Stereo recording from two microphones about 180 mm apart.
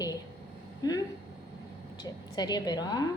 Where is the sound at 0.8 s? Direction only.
20° left (ahead or behind).